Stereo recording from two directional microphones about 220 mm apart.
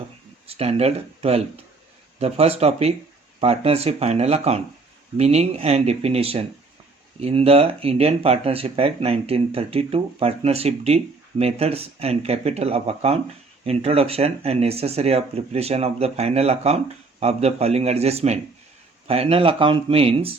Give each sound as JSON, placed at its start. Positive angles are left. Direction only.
{"t": 0.4, "sound": "speech", "side_deg": -25}